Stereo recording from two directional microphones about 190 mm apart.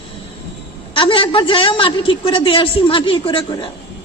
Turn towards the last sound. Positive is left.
turn(degrees=25)  # may be behind; listen again after turning